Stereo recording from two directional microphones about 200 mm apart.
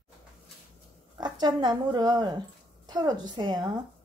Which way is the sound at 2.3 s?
20° right (ahead or behind).